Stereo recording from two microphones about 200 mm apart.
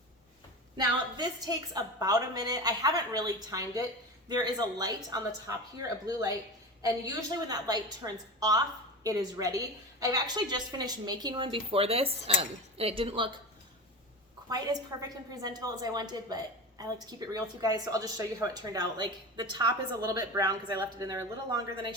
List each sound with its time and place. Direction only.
0.8 s a woman's voice: 20° right (ahead or behind)
14.5 s a woman's voice: 20° right (ahead or behind)